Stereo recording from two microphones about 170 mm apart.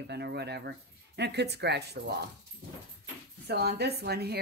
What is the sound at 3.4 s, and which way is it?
Speech, 70° right (ahead or behind).